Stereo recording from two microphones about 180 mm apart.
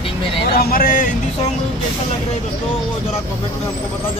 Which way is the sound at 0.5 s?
55° left (ahead or behind).